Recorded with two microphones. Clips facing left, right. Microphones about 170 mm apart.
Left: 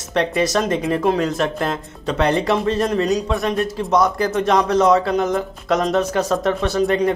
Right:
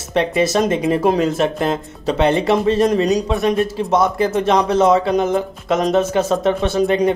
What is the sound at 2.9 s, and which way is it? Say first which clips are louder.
Speech: right 3 dB; 15° right (ahead or behind).